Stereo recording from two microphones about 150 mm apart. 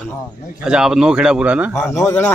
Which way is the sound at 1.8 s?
15° left (ahead or behind).